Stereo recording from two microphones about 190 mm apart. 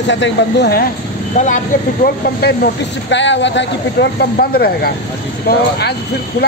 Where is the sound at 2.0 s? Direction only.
55° left (ahead or behind).